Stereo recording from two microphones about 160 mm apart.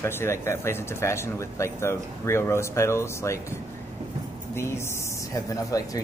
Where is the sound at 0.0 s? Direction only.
15° left (ahead or behind).